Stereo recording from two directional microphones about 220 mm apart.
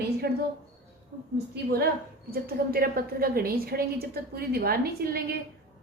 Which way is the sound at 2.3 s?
40° right (ahead or behind).